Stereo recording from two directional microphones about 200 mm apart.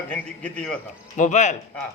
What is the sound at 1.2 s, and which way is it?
Speech, 35° left (ahead or behind).